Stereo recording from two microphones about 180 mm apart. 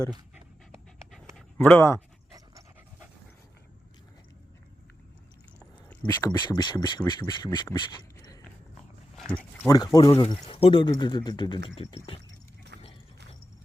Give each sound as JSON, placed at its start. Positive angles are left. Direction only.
{"t": 1.4, "sound": "dog", "side_deg": 5}
{"t": 5.5, "sound": "a sound", "side_deg": 5}
{"t": 6.2, "sound": "speech", "side_deg": 20}
{"t": 9.1, "sound": "a sound", "side_deg": 5}
{"t": 9.6, "sound": "speech", "side_deg": 20}
{"t": 12.7, "sound": "horse", "side_deg": -65}